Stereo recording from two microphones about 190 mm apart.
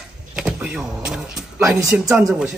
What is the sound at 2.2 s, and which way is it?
Speech, 10° right (ahead or behind).